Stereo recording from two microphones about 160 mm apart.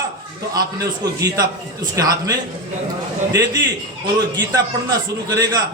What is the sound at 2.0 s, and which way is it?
Speech, 20° right (ahead or behind).